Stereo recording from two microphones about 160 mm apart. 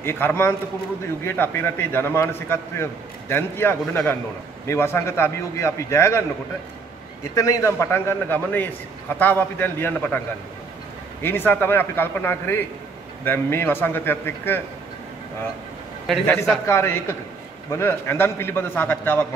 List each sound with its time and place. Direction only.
0.0 s a man's voice: 15° left (ahead or behind)
7.3 s a man's voice: 20° left (ahead or behind)
11.2 s a man's voice: 15° left (ahead or behind)
16.1 s a man's voice: centre (ahead or behind)
16.3 s a man's voice: 15° left (ahead or behind)